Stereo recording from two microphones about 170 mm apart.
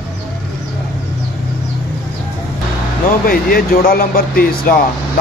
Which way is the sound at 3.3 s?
60° left (ahead or behind).